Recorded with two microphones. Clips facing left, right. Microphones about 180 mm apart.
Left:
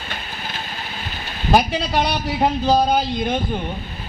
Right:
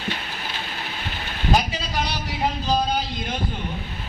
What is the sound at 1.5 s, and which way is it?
A man's voice, 60° left (ahead or behind).